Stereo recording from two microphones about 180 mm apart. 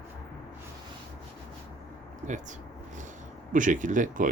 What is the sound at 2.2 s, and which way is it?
A man's voice, 45° right (ahead or behind).